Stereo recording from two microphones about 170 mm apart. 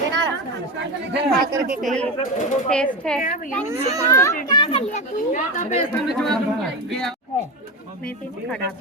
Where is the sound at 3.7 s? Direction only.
20° right (ahead or behind).